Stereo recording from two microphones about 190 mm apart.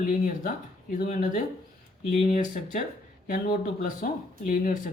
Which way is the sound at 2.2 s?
45° left (ahead or behind).